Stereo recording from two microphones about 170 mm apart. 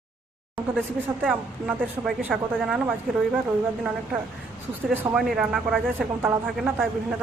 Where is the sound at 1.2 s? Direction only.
Centre (ahead or behind).